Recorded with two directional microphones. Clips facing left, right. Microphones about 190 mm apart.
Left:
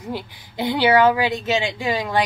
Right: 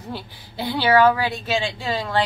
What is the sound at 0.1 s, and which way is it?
Speech, 15° left (ahead or behind).